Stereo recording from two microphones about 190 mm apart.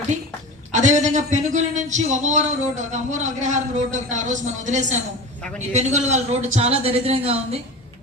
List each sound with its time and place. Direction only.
0.7 s a man's voice: 40° right (ahead or behind)